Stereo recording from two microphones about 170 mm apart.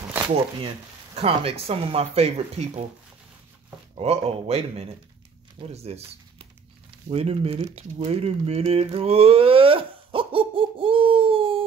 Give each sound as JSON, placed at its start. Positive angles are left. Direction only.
{"t": 1.1, "sound": "speech", "side_deg": -35}
{"t": 3.9, "sound": "speech", "side_deg": -35}
{"t": 7.1, "sound": "speech", "side_deg": -35}